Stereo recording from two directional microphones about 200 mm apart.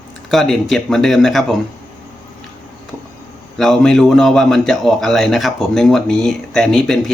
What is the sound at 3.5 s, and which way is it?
A man's voice, centre (ahead or behind).